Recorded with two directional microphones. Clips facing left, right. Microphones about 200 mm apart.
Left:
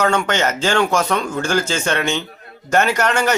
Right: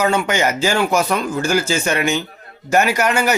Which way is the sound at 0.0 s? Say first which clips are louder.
Right 1 dB; 10° right (ahead or behind).